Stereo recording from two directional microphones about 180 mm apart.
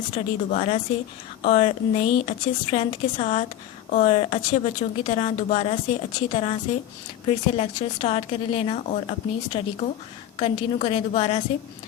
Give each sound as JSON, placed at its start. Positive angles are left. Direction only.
{"t": 0.1, "sound": "speech", "side_deg": 35}